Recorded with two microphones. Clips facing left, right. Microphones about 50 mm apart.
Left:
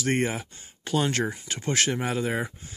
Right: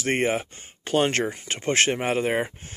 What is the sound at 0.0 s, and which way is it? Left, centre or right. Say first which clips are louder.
Speech: right 3 dB; right.